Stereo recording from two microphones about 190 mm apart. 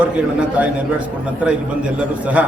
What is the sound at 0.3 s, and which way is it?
A man's voice, 10° right (ahead or behind).